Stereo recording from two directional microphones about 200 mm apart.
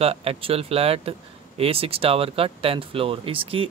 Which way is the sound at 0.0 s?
30° right (ahead or behind).